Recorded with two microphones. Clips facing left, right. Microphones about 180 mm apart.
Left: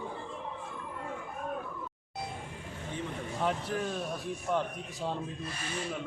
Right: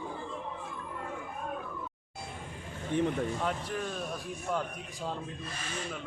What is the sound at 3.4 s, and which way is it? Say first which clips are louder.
A man's voice: left 2 dB; centre (ahead or behind).